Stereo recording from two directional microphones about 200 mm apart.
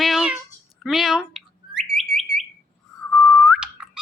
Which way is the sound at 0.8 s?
Centre (ahead or behind).